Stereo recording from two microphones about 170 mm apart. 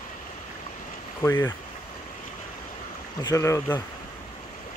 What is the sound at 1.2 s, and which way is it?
Speech, 15° left (ahead or behind).